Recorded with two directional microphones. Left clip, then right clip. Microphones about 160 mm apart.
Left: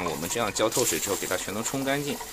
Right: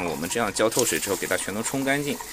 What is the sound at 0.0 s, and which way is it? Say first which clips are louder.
Speech: right 2 dB; 10° right (ahead or behind).